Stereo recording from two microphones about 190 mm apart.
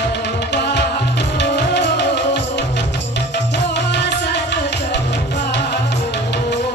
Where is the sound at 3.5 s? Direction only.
65° left (ahead or behind).